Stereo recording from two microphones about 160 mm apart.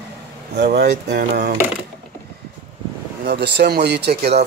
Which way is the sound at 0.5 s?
90° right.